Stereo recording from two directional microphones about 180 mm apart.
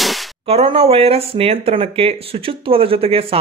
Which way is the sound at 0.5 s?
35° right (ahead or behind).